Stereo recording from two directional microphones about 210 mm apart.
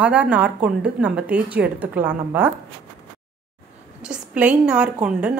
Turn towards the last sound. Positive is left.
turn(degrees=-5)  # may be behind; listen again after turning